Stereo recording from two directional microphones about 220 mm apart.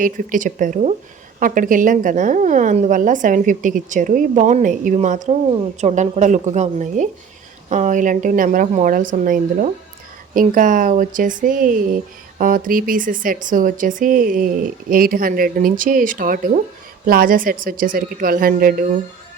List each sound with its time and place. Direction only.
0.0 s speech: 40° right (ahead or behind)